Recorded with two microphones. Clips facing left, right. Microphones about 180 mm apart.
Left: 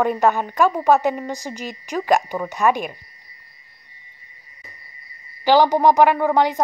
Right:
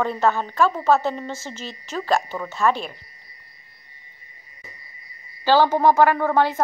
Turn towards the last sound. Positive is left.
turn(degrees=15)  # may be behind; listen again after turning